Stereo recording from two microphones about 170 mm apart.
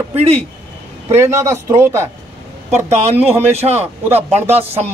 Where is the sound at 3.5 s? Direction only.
40° right (ahead or behind).